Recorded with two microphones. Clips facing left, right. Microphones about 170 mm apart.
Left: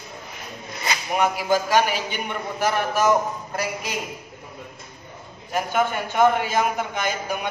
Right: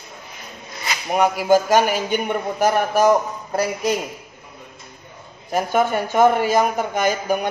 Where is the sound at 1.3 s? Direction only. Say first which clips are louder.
Right 7 dB; 45° right (ahead or behind).